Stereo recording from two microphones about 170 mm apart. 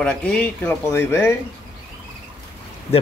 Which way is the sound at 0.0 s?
5° left (ahead or behind).